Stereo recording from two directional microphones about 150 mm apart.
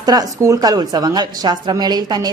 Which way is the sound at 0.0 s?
25° right (ahead or behind).